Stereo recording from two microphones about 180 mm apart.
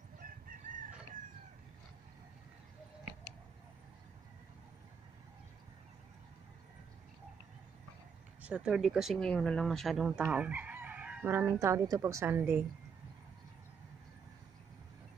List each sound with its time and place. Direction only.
0.2 s chicken: 50° right (ahead or behind)
8.4 s a woman's voice: 5° right (ahead or behind)